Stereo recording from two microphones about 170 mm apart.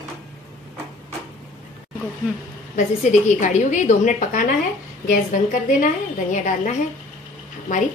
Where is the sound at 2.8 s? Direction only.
45° left (ahead or behind).